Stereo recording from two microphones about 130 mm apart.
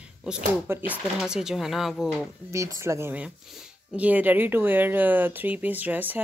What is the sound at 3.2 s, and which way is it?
Speech, 5° right (ahead or behind).